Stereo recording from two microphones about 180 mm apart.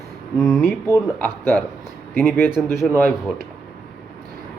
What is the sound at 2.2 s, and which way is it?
Speech, 10° left (ahead or behind).